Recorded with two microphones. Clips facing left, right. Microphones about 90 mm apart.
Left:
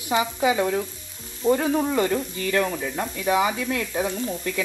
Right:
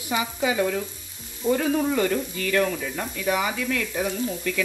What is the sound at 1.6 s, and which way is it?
Speech, 30° left (ahead or behind).